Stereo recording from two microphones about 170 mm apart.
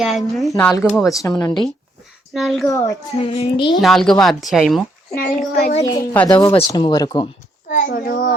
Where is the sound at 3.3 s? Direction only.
30° left (ahead or behind).